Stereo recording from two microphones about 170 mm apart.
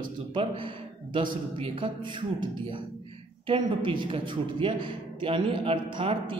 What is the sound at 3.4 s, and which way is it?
A woman's voice, 30° right (ahead or behind).